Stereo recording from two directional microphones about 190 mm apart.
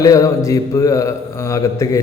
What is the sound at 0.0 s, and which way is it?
Speech, 15° left (ahead or behind).